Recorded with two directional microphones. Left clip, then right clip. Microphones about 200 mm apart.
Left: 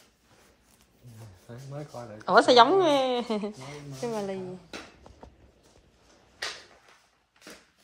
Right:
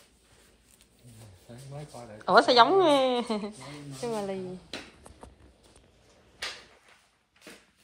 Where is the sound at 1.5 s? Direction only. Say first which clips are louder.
Left 3 dB; 45° left (ahead or behind).